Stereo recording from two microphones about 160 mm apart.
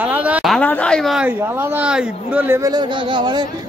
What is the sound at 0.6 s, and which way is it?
Speech, 10° left (ahead or behind).